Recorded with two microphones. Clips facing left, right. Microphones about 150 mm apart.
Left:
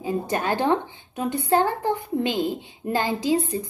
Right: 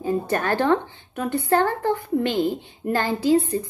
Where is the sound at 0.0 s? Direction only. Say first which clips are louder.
Right 2 dB; 15° left (ahead or behind).